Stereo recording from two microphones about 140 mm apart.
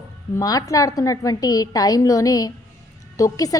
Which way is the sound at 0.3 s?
25° left (ahead or behind).